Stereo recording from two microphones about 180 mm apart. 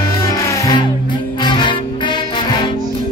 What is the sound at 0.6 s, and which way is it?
Music, 20° left (ahead or behind).